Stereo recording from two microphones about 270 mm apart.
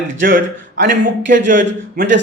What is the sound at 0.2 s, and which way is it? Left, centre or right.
Speech, right.